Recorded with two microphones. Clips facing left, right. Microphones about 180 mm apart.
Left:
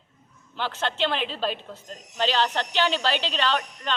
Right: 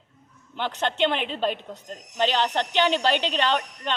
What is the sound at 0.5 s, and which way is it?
A woman's voice, 15° right (ahead or behind).